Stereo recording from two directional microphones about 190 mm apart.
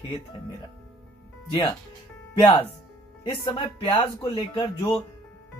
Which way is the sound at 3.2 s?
25° left (ahead or behind).